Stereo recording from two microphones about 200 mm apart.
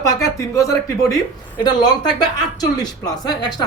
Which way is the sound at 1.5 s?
20° left (ahead or behind).